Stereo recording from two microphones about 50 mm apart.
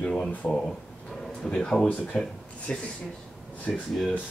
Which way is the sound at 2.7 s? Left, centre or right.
Left.